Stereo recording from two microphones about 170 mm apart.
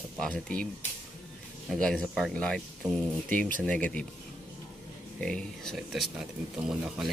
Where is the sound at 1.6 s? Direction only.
5° left (ahead or behind).